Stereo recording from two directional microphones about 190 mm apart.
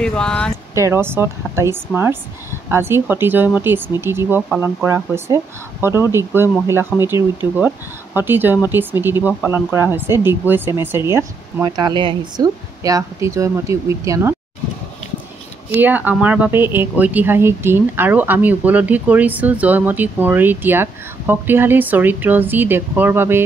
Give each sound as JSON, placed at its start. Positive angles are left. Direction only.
{"t": 0.0, "sound": "a sound", "side_deg": 5}
{"t": 0.7, "sound": "speech", "side_deg": -15}
{"t": 15.7, "sound": "speech", "side_deg": -10}